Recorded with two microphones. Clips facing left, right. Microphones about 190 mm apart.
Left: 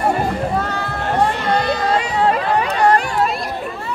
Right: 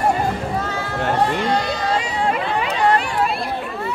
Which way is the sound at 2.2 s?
40° left (ahead or behind).